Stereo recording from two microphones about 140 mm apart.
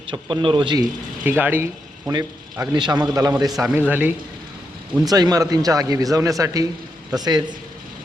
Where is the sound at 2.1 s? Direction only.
25° right (ahead or behind).